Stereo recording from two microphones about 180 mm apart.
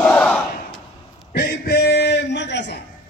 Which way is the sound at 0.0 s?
5° left (ahead or behind).